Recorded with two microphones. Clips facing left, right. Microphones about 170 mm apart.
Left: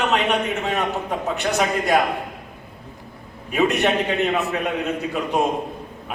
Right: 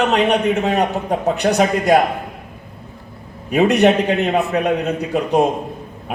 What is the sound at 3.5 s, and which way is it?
A man's voice, 40° right (ahead or behind).